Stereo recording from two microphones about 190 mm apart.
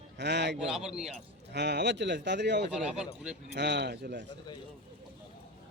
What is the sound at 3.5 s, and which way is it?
Speech, 60° right (ahead or behind).